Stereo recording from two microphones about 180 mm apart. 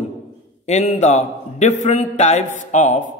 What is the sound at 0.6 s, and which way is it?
A man's voice, 40° left (ahead or behind).